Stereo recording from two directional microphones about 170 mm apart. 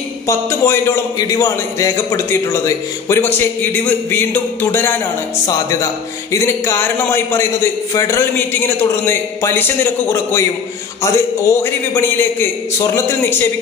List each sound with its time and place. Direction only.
0.3 s speech: 15° left (ahead or behind)